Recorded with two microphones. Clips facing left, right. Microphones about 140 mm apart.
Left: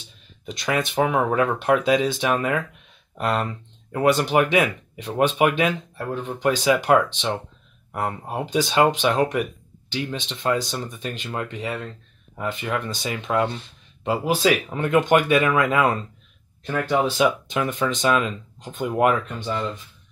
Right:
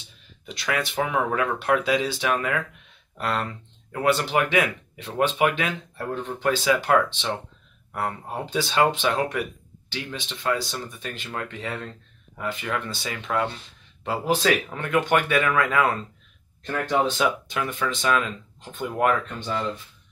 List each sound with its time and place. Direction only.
0.5 s speech: 20° left (ahead or behind)
12.4 s speech: 20° left (ahead or behind)
16.6 s speech: 5° left (ahead or behind)
17.2 s speech: 20° left (ahead or behind)